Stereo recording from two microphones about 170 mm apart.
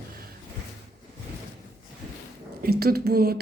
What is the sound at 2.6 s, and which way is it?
Speech, 65° right (ahead or behind).